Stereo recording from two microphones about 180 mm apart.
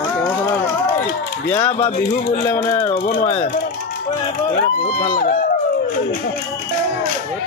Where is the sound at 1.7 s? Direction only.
30° left (ahead or behind).